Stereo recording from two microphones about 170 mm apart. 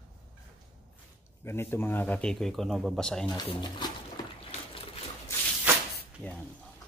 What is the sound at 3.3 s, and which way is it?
Speech, 25° left (ahead or behind).